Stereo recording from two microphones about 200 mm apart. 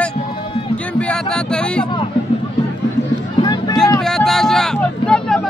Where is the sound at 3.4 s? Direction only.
20° left (ahead or behind).